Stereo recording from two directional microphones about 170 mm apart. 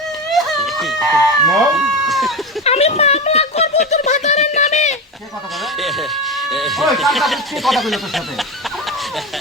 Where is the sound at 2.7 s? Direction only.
40° left (ahead or behind).